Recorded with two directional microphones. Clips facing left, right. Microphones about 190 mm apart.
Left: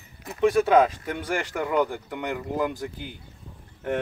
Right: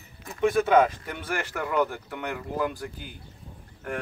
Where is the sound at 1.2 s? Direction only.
15° left (ahead or behind).